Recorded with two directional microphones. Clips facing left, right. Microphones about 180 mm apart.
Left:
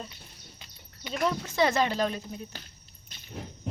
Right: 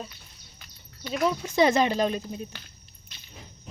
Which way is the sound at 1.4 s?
15° right (ahead or behind).